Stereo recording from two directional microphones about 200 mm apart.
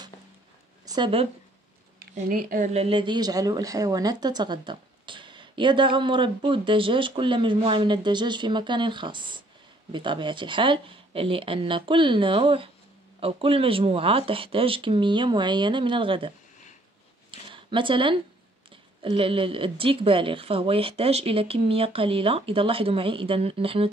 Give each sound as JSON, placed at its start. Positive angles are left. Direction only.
{"t": 0.8, "sound": "speech", "side_deg": -20}
{"t": 2.1, "sound": "a woman's voice", "side_deg": -40}
{"t": 17.3, "sound": "a sound", "side_deg": -25}
{"t": 19.0, "sound": "a woman's voice", "side_deg": -25}